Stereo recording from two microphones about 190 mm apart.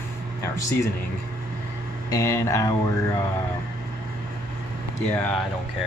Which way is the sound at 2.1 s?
15° left (ahead or behind).